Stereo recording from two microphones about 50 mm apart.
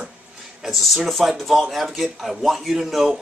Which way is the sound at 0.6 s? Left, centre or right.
Centre.